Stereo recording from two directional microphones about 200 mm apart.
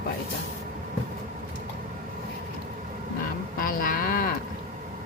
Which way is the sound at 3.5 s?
45° left (ahead or behind).